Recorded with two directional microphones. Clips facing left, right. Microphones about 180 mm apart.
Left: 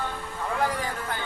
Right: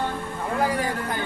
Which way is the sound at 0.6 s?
10° right (ahead or behind).